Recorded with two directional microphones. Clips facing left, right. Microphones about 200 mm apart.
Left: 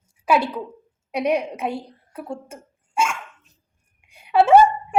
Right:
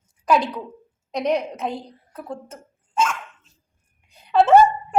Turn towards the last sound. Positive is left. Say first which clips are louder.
# even
turn(degrees=10)  # may be behind; listen again after turning